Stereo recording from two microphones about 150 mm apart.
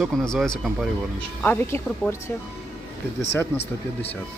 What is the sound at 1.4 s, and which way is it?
Speech, 15° left (ahead or behind).